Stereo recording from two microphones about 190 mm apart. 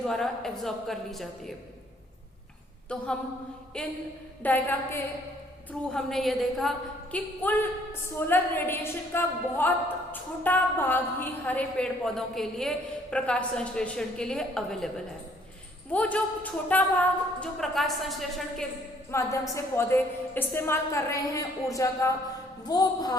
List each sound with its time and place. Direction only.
0.1 s a woman's voice: centre (ahead or behind)
2.9 s a woman's voice: 5° left (ahead or behind)
15.9 s a woman's voice: 5° left (ahead or behind)
19.1 s a woman's voice: 15° left (ahead or behind)